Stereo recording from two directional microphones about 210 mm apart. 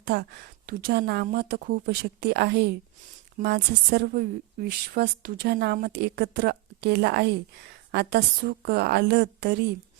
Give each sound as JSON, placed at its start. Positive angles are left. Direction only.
{"t": 0.0, "sound": "a woman's voice", "side_deg": -50}